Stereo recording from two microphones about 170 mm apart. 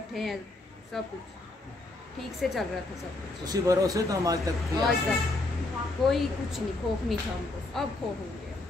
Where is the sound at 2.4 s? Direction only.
Centre (ahead or behind).